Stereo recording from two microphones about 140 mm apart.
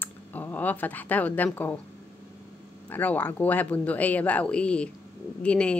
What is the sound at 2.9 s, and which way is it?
Speech, 10° left (ahead or behind).